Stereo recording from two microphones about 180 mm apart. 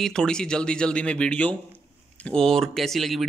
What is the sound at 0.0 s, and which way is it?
Speech, 5° left (ahead or behind).